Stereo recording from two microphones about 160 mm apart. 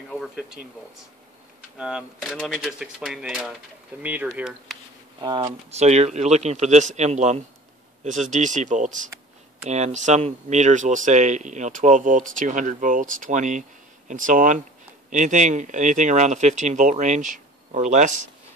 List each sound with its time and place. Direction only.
0.1 s a sound: centre (ahead or behind)
1.8 s speech: 5° right (ahead or behind)
5.2 s speech: 30° right (ahead or behind)
5.7 s speech: 45° right (ahead or behind)